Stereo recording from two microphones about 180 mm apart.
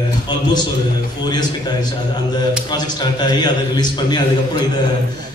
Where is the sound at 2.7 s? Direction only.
25° left (ahead or behind).